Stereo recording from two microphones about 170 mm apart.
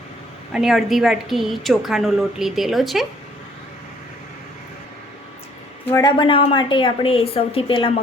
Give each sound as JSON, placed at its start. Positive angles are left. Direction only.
{"t": 0.5, "sound": "a woman's voice", "side_deg": 0}
{"t": 6.0, "sound": "a woman's voice", "side_deg": 25}